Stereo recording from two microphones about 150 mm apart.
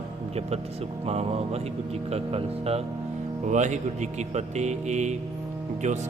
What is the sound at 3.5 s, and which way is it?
Speech, 50° right (ahead or behind).